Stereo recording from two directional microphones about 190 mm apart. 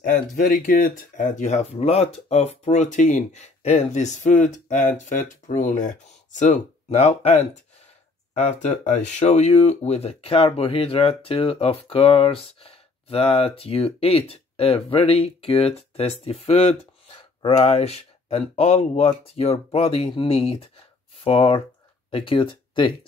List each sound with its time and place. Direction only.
0.0 s speech: 45° left (ahead or behind); by 22.9 s 25° left (ahead or behind)